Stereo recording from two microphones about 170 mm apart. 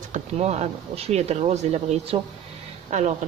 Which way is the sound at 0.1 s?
40° right (ahead or behind).